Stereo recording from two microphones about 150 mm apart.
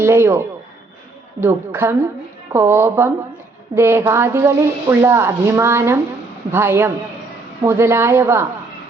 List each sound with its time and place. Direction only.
0.0 s speech: 15° right (ahead or behind)